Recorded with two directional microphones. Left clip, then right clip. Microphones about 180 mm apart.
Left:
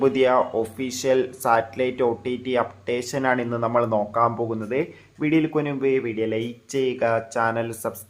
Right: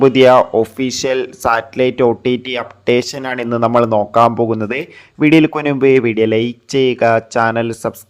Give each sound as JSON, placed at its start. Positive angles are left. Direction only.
{"t": 0.0, "sound": "speech", "side_deg": -45}